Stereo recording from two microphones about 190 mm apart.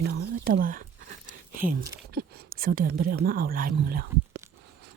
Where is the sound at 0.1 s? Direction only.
60° right (ahead or behind).